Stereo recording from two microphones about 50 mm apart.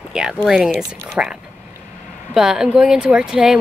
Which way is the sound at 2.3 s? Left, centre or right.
Centre.